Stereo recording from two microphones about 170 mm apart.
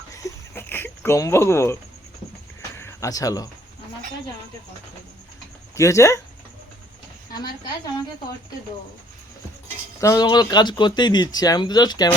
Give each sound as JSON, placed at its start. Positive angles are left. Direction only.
{"t": 0.1, "sound": "a sound", "side_deg": 20}
{"t": 5.7, "sound": "speech", "side_deg": 15}
{"t": 10.0, "sound": "speech", "side_deg": 20}